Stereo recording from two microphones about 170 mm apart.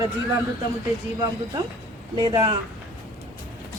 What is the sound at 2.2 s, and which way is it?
Speech, 25° right (ahead or behind).